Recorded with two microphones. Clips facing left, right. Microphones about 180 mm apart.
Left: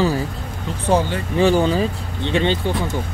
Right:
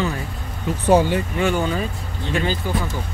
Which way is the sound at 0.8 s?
10° right (ahead or behind).